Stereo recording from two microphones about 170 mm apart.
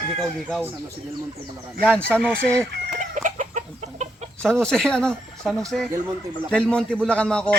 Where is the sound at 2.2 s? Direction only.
5° left (ahead or behind).